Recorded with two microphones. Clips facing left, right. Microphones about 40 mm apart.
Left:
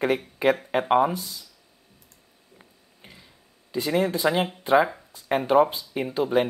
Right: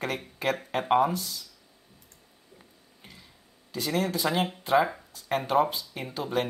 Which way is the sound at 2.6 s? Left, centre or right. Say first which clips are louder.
Left 4 dB; centre.